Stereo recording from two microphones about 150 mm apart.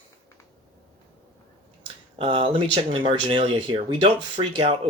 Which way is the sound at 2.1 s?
35° right (ahead or behind).